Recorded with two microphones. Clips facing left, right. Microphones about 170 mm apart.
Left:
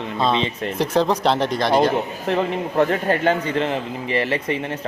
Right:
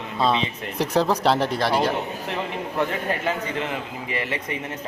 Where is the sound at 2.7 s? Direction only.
30° left (ahead or behind).